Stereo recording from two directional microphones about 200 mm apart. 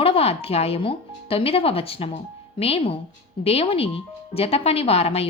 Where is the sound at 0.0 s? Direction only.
30° left (ahead or behind).